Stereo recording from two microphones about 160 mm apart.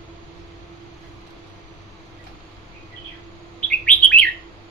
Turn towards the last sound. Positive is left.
turn(degrees=10)  # may be behind; listen again after turning